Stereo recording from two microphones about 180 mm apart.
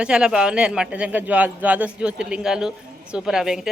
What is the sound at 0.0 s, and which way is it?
A woman's voice, 5° right (ahead or behind).